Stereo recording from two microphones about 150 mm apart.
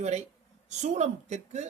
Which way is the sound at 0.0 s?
50° right (ahead or behind).